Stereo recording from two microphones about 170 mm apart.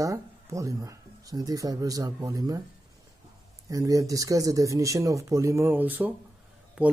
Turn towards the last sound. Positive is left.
turn(degrees=-10)  # may be behind; listen again after turning